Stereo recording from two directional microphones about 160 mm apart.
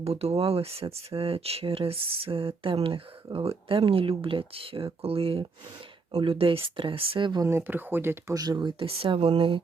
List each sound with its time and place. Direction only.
0.0 s speech: 40° right (ahead or behind)
7.4 s speech: 15° right (ahead or behind); by 9.6 s 35° right (ahead or behind)